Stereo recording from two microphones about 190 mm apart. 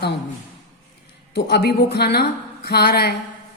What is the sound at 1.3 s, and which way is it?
A woman's voice, 60° left (ahead or behind).